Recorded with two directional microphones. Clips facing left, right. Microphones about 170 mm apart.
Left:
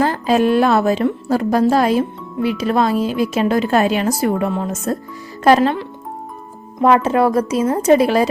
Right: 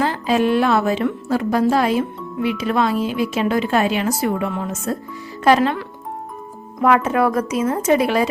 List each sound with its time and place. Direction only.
0.0 s a woman's voice: 45° left (ahead or behind)
6.7 s a woman's voice: 30° left (ahead or behind)